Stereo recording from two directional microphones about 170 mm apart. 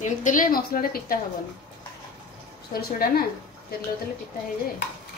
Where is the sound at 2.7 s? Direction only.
65° left (ahead or behind).